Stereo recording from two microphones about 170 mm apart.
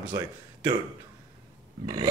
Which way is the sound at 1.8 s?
25° right (ahead or behind).